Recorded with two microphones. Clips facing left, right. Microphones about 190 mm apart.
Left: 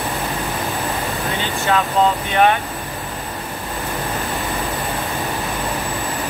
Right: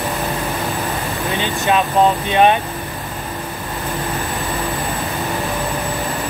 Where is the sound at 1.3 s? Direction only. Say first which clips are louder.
Right 2 dB; 20° right (ahead or behind).